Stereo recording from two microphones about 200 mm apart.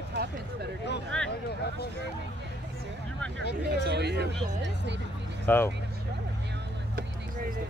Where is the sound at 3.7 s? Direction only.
55° right (ahead or behind).